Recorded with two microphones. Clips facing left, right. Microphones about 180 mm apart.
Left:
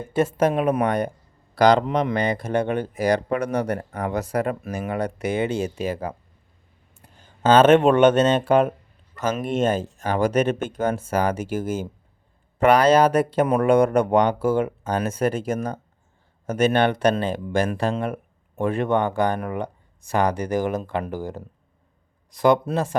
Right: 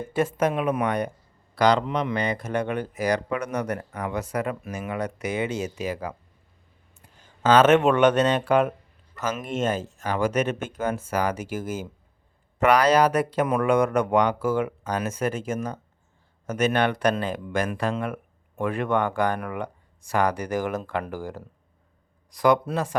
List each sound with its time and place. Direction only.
0.3 s speech: 35° left (ahead or behind)
7.4 s speech: 30° left (ahead or behind)